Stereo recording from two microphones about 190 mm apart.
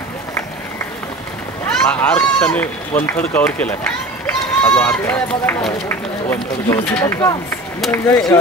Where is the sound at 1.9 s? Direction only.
5° left (ahead or behind).